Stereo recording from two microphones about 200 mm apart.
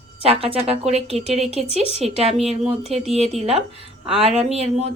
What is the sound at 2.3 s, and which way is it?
Speech, centre (ahead or behind).